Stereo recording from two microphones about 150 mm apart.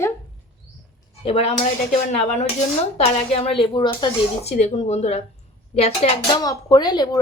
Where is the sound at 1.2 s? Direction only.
40° left (ahead or behind).